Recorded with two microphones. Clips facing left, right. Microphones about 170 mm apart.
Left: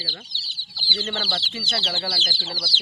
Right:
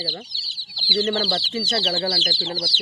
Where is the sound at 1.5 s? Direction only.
40° right (ahead or behind).